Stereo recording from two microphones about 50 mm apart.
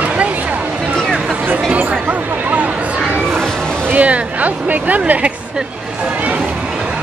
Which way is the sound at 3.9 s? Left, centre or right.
Right.